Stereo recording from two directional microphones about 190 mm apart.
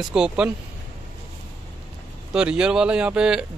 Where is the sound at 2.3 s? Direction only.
5° right (ahead or behind).